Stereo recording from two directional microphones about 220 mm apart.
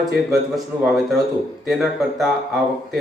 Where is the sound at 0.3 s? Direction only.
Centre (ahead or behind).